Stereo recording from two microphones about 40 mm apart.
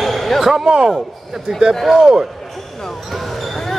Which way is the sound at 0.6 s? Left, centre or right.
Centre.